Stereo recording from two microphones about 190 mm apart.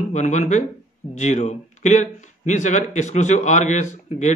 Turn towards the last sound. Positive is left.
turn(degrees=40)  # may be behind; listen again after turning